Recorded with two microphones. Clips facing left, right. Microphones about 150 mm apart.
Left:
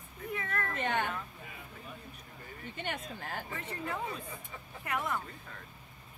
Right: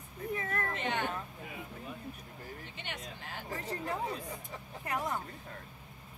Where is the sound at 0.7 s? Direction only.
50° left (ahead or behind).